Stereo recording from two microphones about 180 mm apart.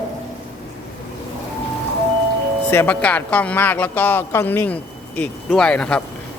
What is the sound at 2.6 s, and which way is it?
Speech, 10° left (ahead or behind).